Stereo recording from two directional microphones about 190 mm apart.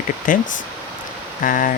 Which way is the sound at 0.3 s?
45° left (ahead or behind).